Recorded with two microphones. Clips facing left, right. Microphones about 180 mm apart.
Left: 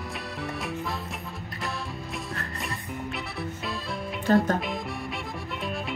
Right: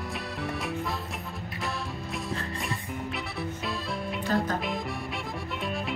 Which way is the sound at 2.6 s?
Centre (ahead or behind).